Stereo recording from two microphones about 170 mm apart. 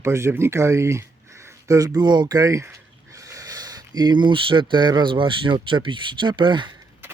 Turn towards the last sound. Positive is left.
turn(degrees=-30)  # may be behind; listen again after turning